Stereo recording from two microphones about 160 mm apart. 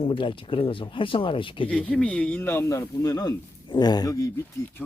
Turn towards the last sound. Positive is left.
turn(degrees=20)  # may be behind; listen again after turning